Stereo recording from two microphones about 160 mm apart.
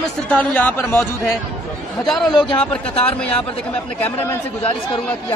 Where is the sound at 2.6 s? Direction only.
10° left (ahead or behind).